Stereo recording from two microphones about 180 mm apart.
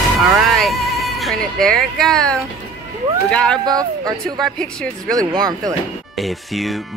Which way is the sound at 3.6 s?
20° right (ahead or behind).